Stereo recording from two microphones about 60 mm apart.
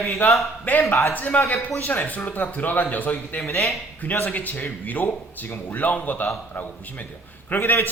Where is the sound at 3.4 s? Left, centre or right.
Left.